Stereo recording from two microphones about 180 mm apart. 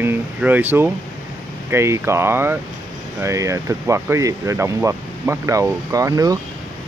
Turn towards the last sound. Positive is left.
turn(degrees=-20)  # may be behind; listen again after turning